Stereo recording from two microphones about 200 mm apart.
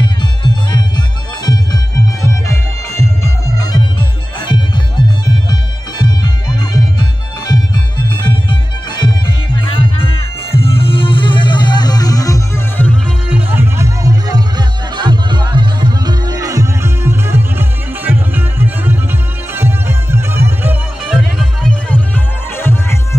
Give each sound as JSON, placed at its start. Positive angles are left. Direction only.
{"t": 0.0, "sound": "music", "side_deg": 20}
{"t": 3.5, "sound": "music", "side_deg": 20}
{"t": 13.3, "sound": "music", "side_deg": -10}